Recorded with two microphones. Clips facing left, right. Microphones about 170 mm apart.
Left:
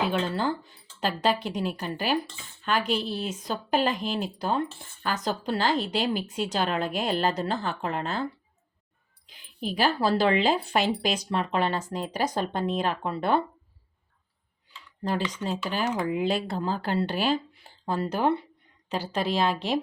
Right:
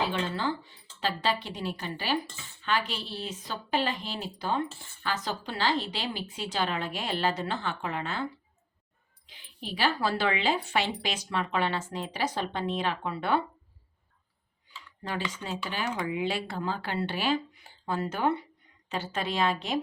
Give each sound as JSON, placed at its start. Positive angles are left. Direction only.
{"t": 0.1, "sound": "a woman's voice", "side_deg": 45}
{"t": 9.6, "sound": "speech", "side_deg": 45}
{"t": 15.0, "sound": "speech", "side_deg": 35}